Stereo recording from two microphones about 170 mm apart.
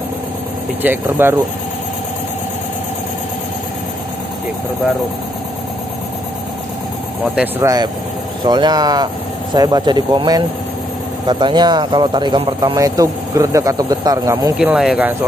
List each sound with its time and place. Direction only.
0.8 s speech: 10° right (ahead or behind)
7.6 s speech: 20° right (ahead or behind)
14.6 s speech: 5° right (ahead or behind)